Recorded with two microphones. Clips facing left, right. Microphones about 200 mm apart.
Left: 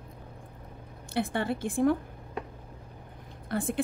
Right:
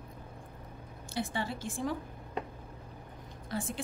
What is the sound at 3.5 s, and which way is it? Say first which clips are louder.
Speech: left 7 dB; 55° left (ahead or behind).